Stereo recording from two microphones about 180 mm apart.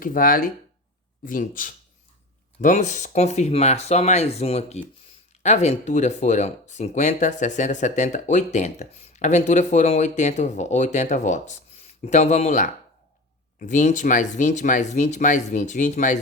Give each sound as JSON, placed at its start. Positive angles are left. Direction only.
{"t": 0.0, "sound": "speech", "side_deg": 50}